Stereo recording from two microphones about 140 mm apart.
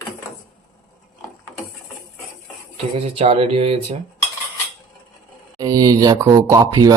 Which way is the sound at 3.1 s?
45° right (ahead or behind).